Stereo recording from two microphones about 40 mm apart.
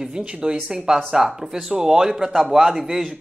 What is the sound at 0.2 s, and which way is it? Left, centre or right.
A woman's voice, right.